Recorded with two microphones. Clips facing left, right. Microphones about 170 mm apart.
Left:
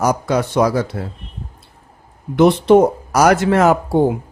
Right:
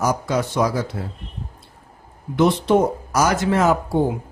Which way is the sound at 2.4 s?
60° left (ahead or behind).